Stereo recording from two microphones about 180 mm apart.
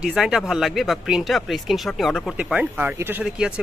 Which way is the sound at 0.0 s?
5° right (ahead or behind).